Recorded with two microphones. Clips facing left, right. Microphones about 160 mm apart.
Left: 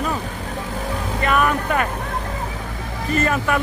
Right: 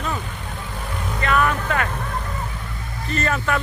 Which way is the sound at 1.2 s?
15° left (ahead or behind).